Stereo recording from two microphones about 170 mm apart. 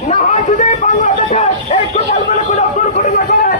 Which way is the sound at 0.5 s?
45° left (ahead or behind).